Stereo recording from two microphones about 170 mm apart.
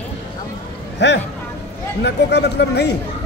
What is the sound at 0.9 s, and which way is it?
A man's voice, 90° left.